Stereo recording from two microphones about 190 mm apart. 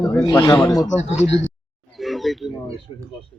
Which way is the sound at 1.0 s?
75° left (ahead or behind).